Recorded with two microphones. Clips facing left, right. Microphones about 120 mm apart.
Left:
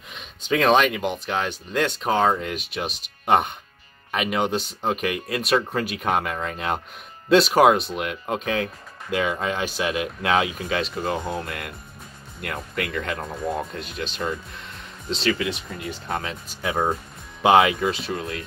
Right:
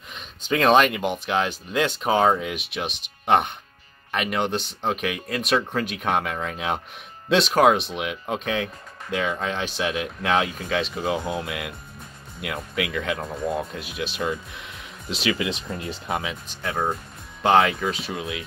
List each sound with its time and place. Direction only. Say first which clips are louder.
0.1 s speech: left 1 dB; centre (ahead or behind)
15.3 s speech: right 1 dB; 20° right (ahead or behind)
16.1 s speech: right 1 dB; 5° right (ahead or behind)
16.6 s speech: left 2 dB; 5° left (ahead or behind)